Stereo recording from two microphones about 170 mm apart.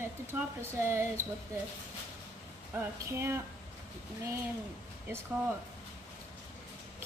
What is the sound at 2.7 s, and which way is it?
Speech, 15° right (ahead or behind).